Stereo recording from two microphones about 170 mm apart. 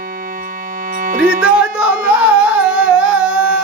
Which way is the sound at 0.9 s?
50° right (ahead or behind).